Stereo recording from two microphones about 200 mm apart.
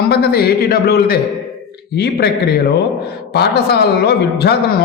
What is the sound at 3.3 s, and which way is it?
A man's voice, 55° left (ahead or behind).